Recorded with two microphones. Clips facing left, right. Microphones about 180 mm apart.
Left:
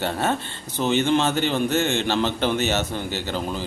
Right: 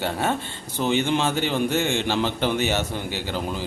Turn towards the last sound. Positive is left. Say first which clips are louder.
# left 1 dB
turn(degrees=-10)  # may be behind; listen again after turning